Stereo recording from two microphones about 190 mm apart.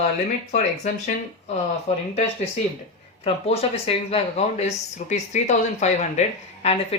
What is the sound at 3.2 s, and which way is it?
Speech, 30° left (ahead or behind).